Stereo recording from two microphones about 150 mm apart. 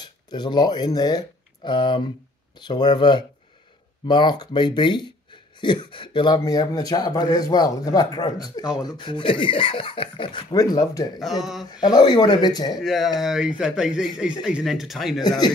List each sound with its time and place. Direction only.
0.0 s speech: 30° left (ahead or behind)
11.1 s speech: centre (ahead or behind)
11.8 s speech: 30° left (ahead or behind)
12.8 s speech: centre (ahead or behind)